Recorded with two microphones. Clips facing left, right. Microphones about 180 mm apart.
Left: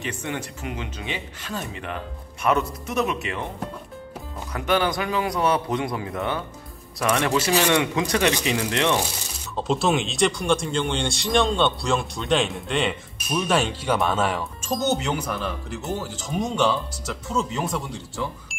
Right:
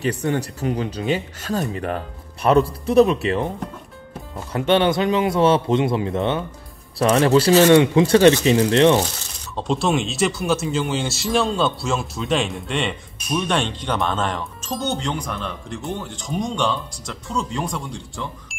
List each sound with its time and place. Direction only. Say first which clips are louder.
0.0 s speech: right 8 dB; 35° right (ahead or behind)
4.5 s a man's voice: right 5 dB; 30° right (ahead or behind)
9.6 s speech: right 1 dB; centre (ahead or behind)